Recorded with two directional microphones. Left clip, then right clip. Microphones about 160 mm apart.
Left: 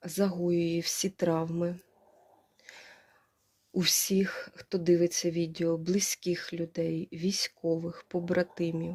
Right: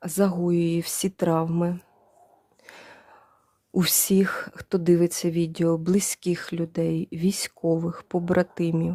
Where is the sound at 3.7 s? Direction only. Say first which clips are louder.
Right 5 dB; 55° right (ahead or behind).